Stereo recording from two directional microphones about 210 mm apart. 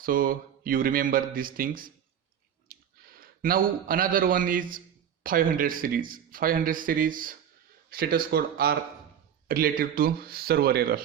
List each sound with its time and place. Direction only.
0.0 s speech: 40° right (ahead or behind)